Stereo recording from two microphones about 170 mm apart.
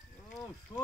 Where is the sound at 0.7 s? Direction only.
25° left (ahead or behind).